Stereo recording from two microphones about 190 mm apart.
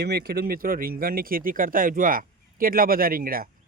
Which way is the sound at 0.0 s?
55° right (ahead or behind).